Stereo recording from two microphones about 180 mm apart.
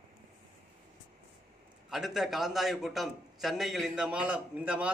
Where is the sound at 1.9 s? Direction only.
Centre (ahead or behind).